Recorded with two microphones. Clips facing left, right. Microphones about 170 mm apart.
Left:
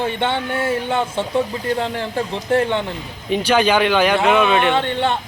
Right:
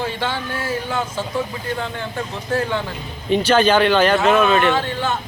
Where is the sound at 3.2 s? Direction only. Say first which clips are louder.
Right 1 dB; 10° left (ahead or behind).